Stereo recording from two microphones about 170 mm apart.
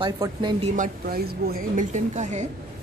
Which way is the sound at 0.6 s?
50° right (ahead or behind).